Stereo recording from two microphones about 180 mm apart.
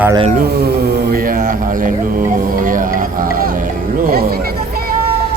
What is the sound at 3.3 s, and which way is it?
Music, 50° right (ahead or behind).